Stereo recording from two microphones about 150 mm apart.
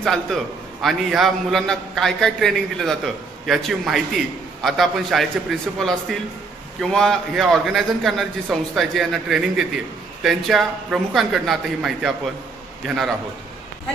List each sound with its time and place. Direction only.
0.0 s a man's voice: centre (ahead or behind)